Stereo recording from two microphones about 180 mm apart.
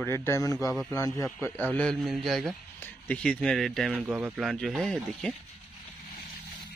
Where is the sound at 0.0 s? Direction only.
15° left (ahead or behind).